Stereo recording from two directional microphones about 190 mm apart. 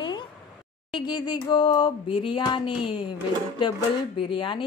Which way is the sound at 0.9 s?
25° left (ahead or behind).